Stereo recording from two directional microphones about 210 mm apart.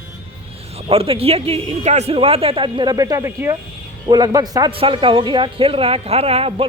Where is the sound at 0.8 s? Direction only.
25° right (ahead or behind).